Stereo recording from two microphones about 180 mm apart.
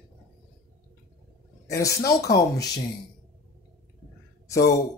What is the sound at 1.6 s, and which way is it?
Speech, 15° left (ahead or behind).